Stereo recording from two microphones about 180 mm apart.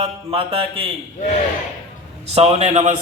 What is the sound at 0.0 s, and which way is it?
Speech, 30° right (ahead or behind).